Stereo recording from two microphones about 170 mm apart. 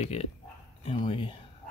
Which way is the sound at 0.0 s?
35° left (ahead or behind).